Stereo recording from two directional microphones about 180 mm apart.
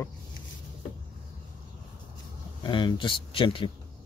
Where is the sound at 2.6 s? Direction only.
25° left (ahead or behind).